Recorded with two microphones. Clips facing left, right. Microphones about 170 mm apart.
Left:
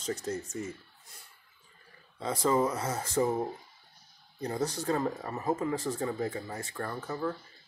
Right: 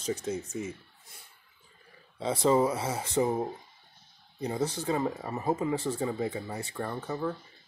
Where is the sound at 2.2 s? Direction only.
30° right (ahead or behind).